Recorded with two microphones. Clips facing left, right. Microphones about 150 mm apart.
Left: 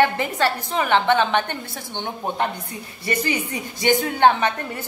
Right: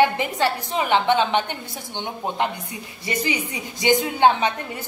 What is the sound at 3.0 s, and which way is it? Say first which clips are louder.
A woman's voice: left 2 dB; 15° right (ahead or behind).